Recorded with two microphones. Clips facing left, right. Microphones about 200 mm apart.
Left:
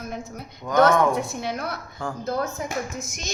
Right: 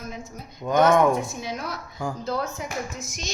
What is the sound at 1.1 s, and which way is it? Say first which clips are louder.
Speech: left 1 dB; 65° left (ahead or behind).